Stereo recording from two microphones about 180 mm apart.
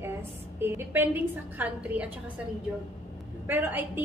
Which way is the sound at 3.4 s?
10° right (ahead or behind).